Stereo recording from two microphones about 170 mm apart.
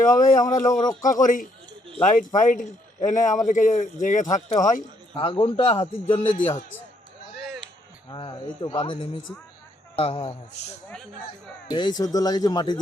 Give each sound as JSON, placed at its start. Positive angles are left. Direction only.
{"t": 0.0, "sound": "speech", "side_deg": 50}
{"t": 0.6, "sound": "speech", "side_deg": 20}
{"t": 1.0, "sound": "a man's voice", "side_deg": 50}
{"t": 8.1, "sound": "a man's voice", "side_deg": 25}
{"t": 11.7, "sound": "speech", "side_deg": 25}